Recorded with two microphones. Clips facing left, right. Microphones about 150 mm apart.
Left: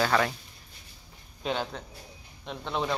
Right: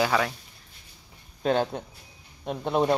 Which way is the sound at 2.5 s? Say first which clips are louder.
Right 7 dB; 45° right (ahead or behind).